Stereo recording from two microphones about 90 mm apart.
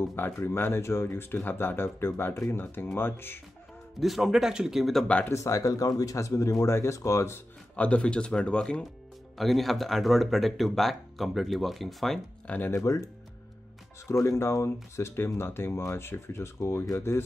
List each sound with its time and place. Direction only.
0.0 s speech: 25° left (ahead or behind)
4.0 s speech: 5° right (ahead or behind)
5.0 s speech: 15° left (ahead or behind)
5.3 s speech: 35° left (ahead or behind)
7.7 s speech: 15° left (ahead or behind)
12.4 s speech: 20° left (ahead or behind)
12.7 s speech: 35° left (ahead or behind)